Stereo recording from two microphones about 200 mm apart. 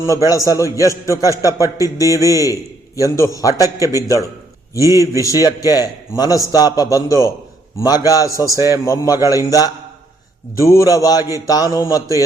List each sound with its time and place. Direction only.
0.1 s a man's voice: 15° left (ahead or behind)
4.9 s a man's voice: 15° right (ahead or behind)
5.2 s a man's voice: 15° left (ahead or behind)